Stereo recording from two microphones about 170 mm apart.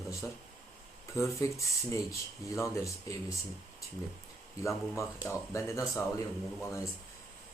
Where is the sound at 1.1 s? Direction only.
15° left (ahead or behind).